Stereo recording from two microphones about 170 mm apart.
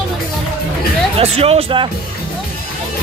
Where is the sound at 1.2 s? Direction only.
35° right (ahead or behind).